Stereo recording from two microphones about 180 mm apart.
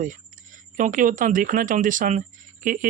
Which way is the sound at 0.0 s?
45° right (ahead or behind).